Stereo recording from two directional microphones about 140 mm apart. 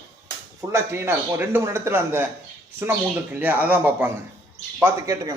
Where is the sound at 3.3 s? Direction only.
15° right (ahead or behind).